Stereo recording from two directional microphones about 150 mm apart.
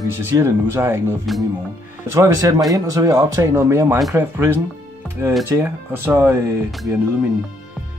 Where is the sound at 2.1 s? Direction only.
20° right (ahead or behind).